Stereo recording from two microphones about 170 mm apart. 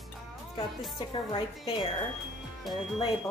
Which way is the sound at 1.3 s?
25° left (ahead or behind).